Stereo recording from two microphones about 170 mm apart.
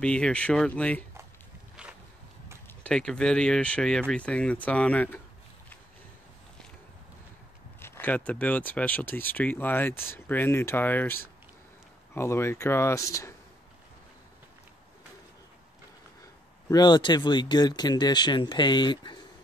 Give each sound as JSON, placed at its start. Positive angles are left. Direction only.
{"t": 0.0, "sound": "speech", "side_deg": 5}
{"t": 2.8, "sound": "speech", "side_deg": 5}
{"t": 7.8, "sound": "speech", "side_deg": 10}
{"t": 16.6, "sound": "speech", "side_deg": 25}